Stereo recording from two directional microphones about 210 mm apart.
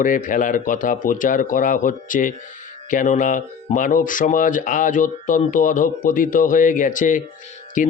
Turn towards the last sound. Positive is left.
turn(degrees=40)  # may be behind; listen again after turning